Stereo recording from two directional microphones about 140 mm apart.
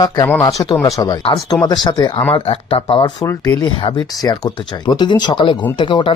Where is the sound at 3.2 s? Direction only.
20° left (ahead or behind).